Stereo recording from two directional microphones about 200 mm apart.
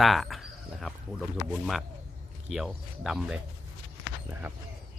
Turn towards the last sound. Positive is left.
turn(degrees=-10)  # may be behind; listen again after turning